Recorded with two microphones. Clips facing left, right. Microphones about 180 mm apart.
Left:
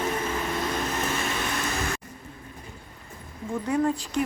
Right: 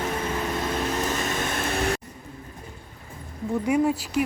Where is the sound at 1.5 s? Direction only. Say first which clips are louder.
Right 4 dB; 60° right (ahead or behind).